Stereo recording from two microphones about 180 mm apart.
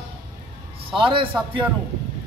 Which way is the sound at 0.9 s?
30° right (ahead or behind).